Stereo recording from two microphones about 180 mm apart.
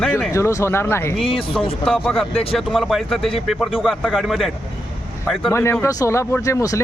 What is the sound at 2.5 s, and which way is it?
A man's voice, centre (ahead or behind).